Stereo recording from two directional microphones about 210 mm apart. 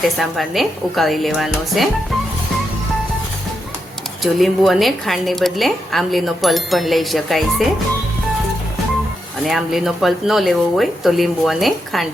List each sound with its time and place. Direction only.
0.2 s a woman's voice: centre (ahead or behind)
4.2 s a woman's voice: centre (ahead or behind)
9.4 s a woman's voice: centre (ahead or behind)